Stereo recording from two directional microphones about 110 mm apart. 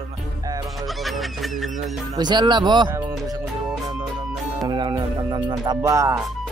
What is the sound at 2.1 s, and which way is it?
Speech, 40° right (ahead or behind).